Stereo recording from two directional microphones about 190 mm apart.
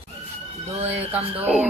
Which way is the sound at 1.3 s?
5° right (ahead or behind).